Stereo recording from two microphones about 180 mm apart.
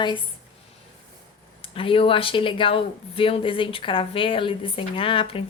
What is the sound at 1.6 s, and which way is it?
A woman's voice, 30° left (ahead or behind).